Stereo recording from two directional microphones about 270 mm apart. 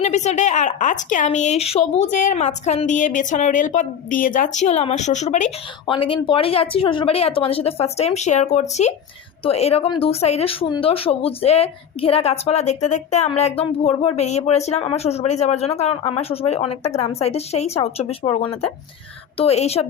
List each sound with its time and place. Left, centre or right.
0.0 s speech: left